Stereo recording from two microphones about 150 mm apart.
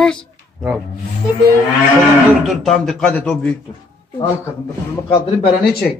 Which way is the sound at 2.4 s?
Centre (ahead or behind).